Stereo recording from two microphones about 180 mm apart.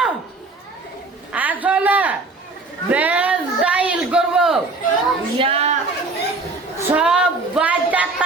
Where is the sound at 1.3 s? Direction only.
10° right (ahead or behind).